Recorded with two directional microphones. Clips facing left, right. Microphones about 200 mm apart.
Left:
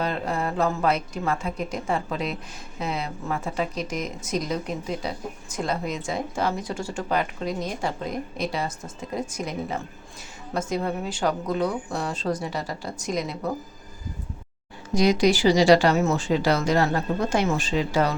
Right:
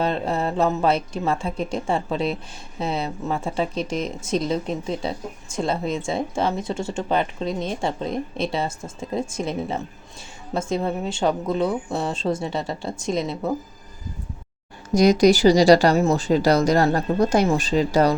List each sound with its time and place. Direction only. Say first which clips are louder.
0.0 s a woman's voice: right 4 dB; 25° right (ahead or behind)
14.9 s speech: right 5 dB; 40° right (ahead or behind)